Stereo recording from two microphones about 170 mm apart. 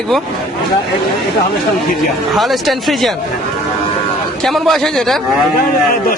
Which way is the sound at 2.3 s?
Centre (ahead or behind).